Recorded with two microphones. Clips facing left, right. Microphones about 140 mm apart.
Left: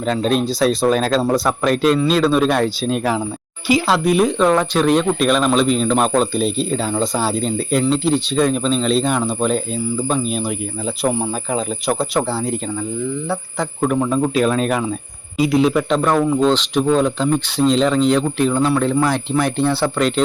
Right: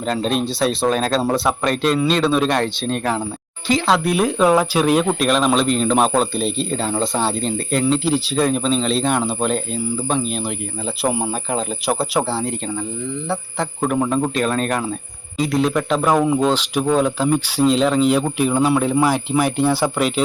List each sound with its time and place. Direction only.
0.0 s speech: centre (ahead or behind)
13.6 s speech: 5° right (ahead or behind)